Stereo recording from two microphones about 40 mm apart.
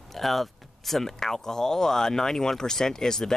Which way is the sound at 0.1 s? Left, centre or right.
Centre.